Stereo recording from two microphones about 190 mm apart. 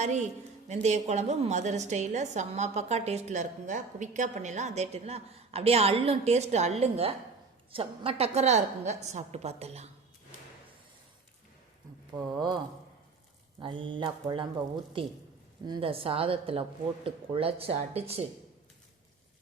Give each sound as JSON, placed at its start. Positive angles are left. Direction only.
{"t": 0.0, "sound": "a woman's voice", "side_deg": -40}
{"t": 12.1, "sound": "a woman's voice", "side_deg": -20}
{"t": 13.6, "sound": "a woman's voice", "side_deg": -25}